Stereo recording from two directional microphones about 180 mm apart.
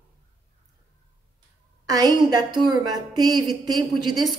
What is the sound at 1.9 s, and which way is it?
A woman's voice, 20° right (ahead or behind).